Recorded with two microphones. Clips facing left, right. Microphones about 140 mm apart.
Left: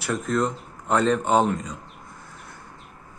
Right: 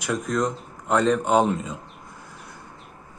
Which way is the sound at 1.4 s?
20° right (ahead or behind).